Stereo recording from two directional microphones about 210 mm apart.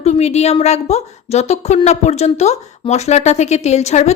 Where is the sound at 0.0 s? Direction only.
30° left (ahead or behind).